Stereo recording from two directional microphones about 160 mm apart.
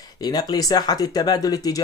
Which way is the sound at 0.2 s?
25° left (ahead or behind).